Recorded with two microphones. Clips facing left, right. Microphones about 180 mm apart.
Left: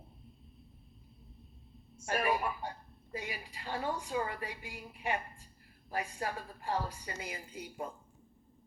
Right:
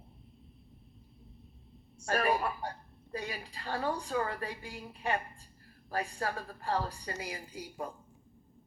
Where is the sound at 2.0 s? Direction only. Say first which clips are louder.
Right 2 dB; 20° left (ahead or behind).